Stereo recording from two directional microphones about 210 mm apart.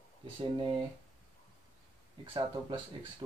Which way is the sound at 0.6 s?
25° right (ahead or behind).